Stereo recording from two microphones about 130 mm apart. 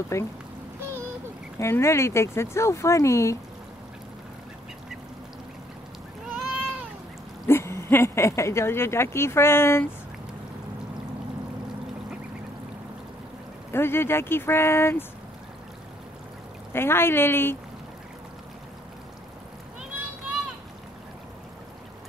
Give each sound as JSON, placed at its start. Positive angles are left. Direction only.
{"t": 0.1, "sound": "speech", "side_deg": 20}
{"t": 1.6, "sound": "speech", "side_deg": 20}
{"t": 6.3, "sound": "cat", "side_deg": -5}
{"t": 7.4, "sound": "speech", "side_deg": 20}
{"t": 13.7, "sound": "speech", "side_deg": 20}
{"t": 16.7, "sound": "speech", "side_deg": 20}